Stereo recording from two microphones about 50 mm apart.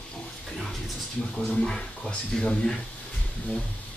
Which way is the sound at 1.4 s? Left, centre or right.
Centre.